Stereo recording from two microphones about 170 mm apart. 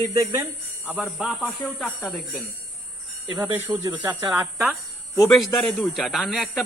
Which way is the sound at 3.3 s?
30° right (ahead or behind).